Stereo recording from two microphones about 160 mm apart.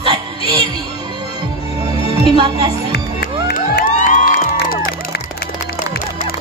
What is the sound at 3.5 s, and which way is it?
Crowd, 60° left (ahead or behind).